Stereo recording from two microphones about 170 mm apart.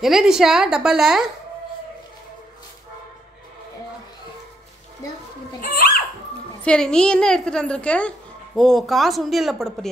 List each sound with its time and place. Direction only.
0.0 s a woman's voice: centre (ahead or behind)
5.6 s a sound: 60° left (ahead or behind)
6.6 s a woman's voice: 5° left (ahead or behind)